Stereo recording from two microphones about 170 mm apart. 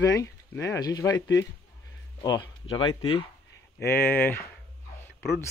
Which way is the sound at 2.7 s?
30° left (ahead or behind).